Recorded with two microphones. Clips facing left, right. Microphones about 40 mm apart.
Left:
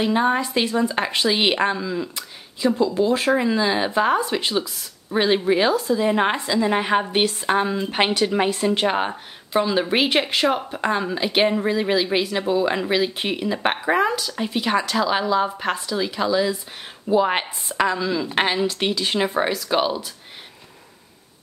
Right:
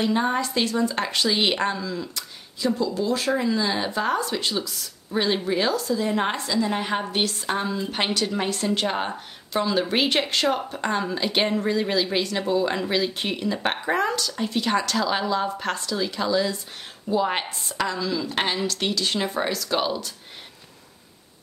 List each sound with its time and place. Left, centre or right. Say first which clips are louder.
0.0 s a woman's voice: left 3 dB; centre